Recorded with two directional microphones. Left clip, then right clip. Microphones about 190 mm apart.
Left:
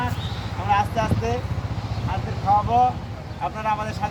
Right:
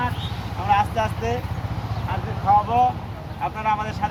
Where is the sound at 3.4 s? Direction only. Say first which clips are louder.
Right 1 dB; 15° left (ahead or behind).